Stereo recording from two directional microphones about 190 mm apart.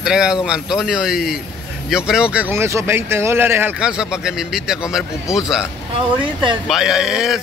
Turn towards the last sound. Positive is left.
turn(degrees=-5)  # may be behind; listen again after turning